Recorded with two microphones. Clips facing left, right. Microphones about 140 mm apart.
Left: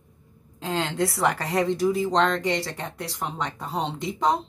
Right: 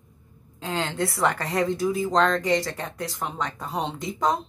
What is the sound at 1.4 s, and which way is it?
A woman's voice, 30° left (ahead or behind).